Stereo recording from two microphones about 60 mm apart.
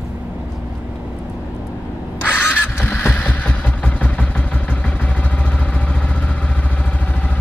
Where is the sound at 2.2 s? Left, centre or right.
Left.